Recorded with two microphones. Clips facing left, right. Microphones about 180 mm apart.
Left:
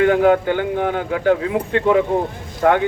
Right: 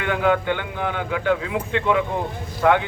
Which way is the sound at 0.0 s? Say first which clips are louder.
Left 7 dB; 40° left (ahead or behind).